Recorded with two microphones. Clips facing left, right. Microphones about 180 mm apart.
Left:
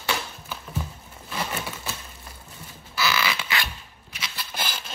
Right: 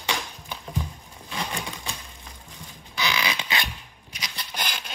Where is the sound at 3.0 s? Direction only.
15° right (ahead or behind).